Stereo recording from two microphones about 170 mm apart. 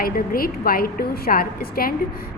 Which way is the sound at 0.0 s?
60° left (ahead or behind).